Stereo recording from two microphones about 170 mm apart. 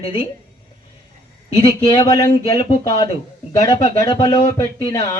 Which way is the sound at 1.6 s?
25° left (ahead or behind).